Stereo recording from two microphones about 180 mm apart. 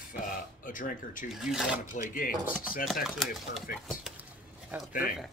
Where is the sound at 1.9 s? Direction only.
45° left (ahead or behind).